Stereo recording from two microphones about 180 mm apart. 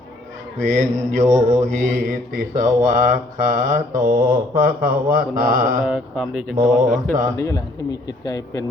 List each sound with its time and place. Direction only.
0.6 s mantra: 45° right (ahead or behind)
5.8 s speech: 5° right (ahead or behind)
6.6 s mantra: 50° right (ahead or behind)
7.3 s a man's voice: 20° left (ahead or behind)